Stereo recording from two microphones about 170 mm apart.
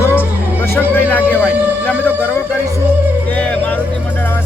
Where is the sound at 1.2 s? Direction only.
10° right (ahead or behind).